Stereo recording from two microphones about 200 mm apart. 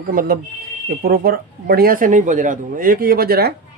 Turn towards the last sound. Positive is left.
turn(degrees=-50)  # may be behind; listen again after turning